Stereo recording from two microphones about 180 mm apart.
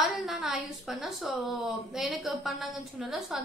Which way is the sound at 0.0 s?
Centre (ahead or behind).